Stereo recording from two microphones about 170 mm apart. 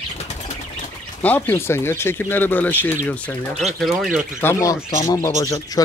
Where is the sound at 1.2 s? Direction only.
10° left (ahead or behind).